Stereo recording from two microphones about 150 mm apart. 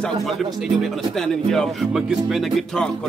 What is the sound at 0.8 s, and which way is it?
Speech, 5° left (ahead or behind).